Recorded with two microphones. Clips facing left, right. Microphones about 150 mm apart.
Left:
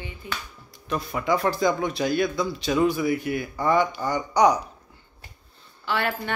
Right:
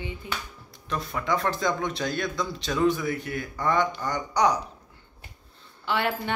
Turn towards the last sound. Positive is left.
turn(degrees=-20)  # may be behind; listen again after turning